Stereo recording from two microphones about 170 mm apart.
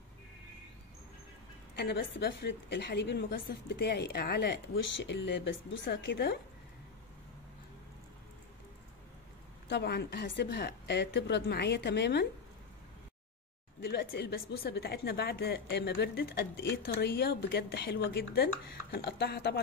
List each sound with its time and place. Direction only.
1.8 s a woman's voice: 85° left
9.7 s a woman's voice: 80° left
13.7 s a woman's voice: 65° left (ahead or behind)